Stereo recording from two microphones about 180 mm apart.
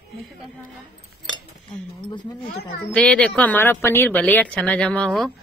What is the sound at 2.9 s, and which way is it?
Speech, 5° left (ahead or behind).